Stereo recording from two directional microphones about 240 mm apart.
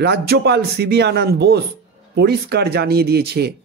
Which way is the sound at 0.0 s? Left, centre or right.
Right.